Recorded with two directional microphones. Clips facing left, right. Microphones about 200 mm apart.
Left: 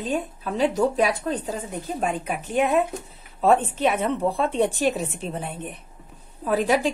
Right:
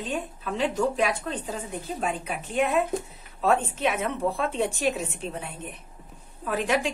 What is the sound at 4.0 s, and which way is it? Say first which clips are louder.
Speech: left 4 dB; 30° left (ahead or behind).